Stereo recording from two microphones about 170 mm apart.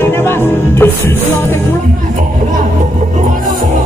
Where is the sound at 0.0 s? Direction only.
10° left (ahead or behind).